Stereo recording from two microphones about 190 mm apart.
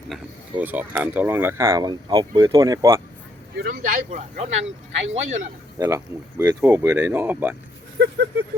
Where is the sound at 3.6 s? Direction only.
50° right (ahead or behind).